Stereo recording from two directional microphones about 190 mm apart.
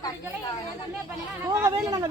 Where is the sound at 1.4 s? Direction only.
15° right (ahead or behind).